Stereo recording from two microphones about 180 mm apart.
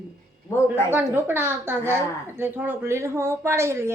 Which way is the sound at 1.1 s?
10° right (ahead or behind).